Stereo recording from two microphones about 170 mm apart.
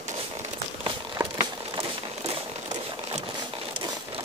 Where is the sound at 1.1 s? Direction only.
20° right (ahead or behind).